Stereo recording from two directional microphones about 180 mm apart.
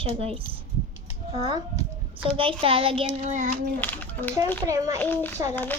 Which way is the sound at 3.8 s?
10° left (ahead or behind).